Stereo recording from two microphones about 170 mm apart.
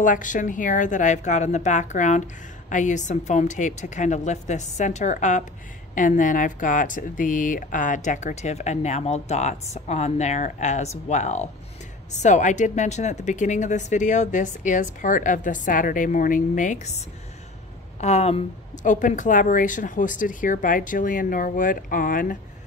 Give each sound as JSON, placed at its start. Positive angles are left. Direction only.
{"t": 0.0, "sound": "speech", "side_deg": 50}
{"t": 18.0, "sound": "speech", "side_deg": 40}